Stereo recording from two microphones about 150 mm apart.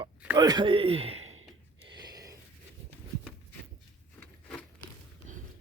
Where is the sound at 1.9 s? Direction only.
25° right (ahead or behind).